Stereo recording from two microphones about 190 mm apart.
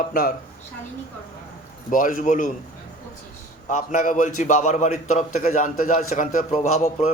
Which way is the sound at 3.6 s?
40° left (ahead or behind).